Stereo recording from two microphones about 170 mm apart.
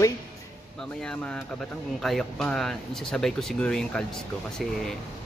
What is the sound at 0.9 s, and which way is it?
Speech, 5° left (ahead or behind).